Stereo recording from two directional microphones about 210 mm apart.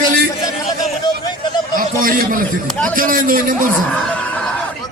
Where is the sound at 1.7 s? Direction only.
40° right (ahead or behind).